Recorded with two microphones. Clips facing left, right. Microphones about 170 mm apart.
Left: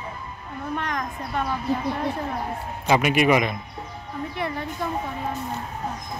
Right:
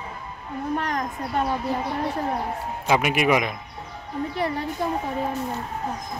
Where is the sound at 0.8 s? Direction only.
35° right (ahead or behind).